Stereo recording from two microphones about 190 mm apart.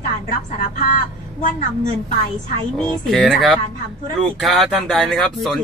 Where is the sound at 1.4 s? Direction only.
40° left (ahead or behind).